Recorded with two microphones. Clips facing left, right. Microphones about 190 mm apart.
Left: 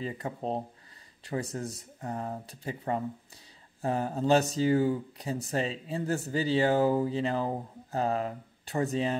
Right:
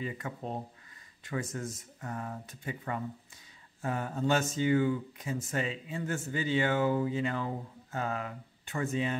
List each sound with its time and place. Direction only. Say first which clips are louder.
0.0 s speech: left 3 dB; 30° left (ahead or behind)